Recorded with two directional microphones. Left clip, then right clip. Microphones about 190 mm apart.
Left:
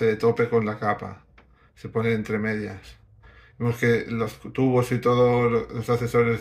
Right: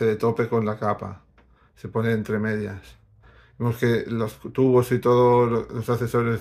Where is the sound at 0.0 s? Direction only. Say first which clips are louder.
Left 1 dB; 45° right (ahead or behind).